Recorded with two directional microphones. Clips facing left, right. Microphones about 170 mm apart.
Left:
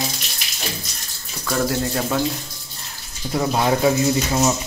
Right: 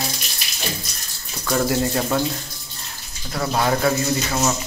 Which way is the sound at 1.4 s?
Centre (ahead or behind).